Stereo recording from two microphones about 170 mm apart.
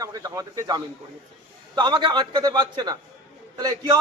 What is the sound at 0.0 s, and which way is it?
A man's voice, 20° right (ahead or behind).